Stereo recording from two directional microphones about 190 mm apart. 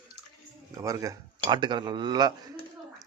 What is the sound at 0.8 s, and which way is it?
Speech, 20° right (ahead or behind).